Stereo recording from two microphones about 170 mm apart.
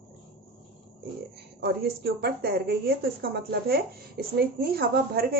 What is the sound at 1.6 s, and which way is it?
A woman's voice, 70° right (ahead or behind).